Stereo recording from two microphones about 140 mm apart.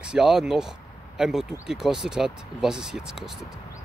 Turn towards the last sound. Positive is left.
turn(degrees=-5)  # may be behind; listen again after turning